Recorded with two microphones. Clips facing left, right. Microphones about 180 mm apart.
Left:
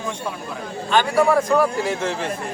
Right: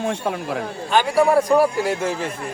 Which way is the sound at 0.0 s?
70° right (ahead or behind).